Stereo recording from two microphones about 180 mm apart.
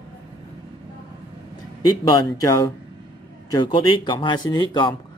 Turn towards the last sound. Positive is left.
turn(degrees=25)  # may be behind; listen again after turning